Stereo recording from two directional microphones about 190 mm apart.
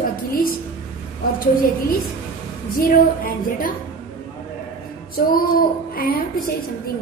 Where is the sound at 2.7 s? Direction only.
50° left (ahead or behind).